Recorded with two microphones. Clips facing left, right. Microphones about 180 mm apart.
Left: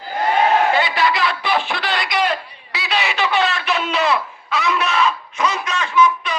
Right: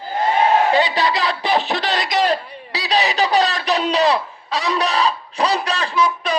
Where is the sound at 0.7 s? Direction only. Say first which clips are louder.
Right 1 dB; 35° right (ahead or behind).